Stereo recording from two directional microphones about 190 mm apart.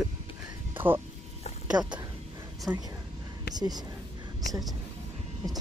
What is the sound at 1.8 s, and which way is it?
Speech, 5° right (ahead or behind).